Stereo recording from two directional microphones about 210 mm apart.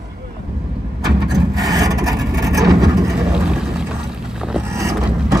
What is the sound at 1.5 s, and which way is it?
Wood, 15° right (ahead or behind).